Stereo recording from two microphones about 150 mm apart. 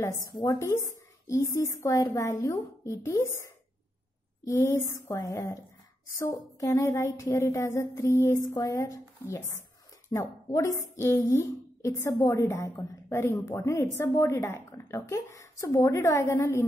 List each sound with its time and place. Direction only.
0.3 s speech: 25° left (ahead or behind)